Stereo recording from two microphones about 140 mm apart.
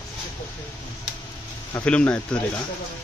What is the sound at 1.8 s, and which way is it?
Speech, 10° left (ahead or behind).